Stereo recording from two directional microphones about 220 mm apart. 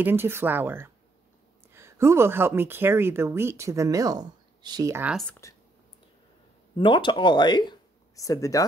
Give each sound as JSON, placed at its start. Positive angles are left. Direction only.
{"t": 0.0, "sound": "speech", "side_deg": -10}
{"t": 5.4, "sound": "a sound", "side_deg": 15}
{"t": 6.8, "sound": "speech", "side_deg": 20}